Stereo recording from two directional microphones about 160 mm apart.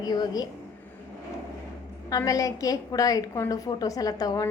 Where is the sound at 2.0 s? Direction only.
20° left (ahead or behind).